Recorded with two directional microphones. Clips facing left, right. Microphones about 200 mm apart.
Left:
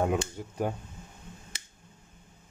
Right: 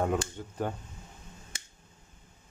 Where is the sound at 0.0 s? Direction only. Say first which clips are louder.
Left 1 dB; 10° left (ahead or behind).